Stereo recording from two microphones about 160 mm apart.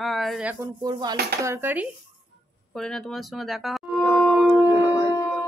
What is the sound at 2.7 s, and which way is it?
Music, 5° left (ahead or behind).